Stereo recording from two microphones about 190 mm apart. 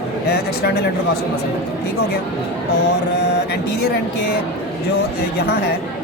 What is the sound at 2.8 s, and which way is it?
Speech, 60° left (ahead or behind).